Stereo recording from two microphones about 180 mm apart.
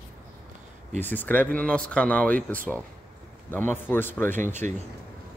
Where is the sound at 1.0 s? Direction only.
10° left (ahead or behind).